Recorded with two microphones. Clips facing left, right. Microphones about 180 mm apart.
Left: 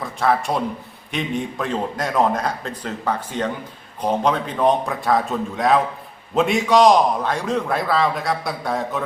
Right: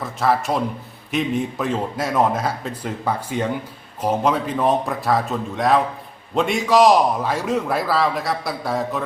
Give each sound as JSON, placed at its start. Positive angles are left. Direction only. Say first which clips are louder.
{"t": 0.0, "sound": "a man's voice", "louder": "even", "side_deg": 0}